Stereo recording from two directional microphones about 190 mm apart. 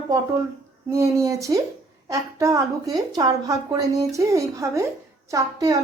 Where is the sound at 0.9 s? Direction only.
15° right (ahead or behind).